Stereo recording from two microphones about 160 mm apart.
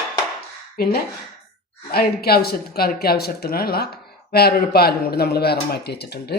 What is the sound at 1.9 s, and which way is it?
Speech, 75° left (ahead or behind).